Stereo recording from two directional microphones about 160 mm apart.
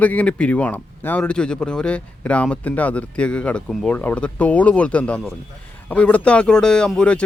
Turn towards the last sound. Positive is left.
turn(degrees=5)  # may be behind; listen again after turning